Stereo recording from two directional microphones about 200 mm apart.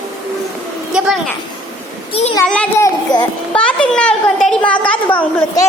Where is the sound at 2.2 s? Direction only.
30° left (ahead or behind).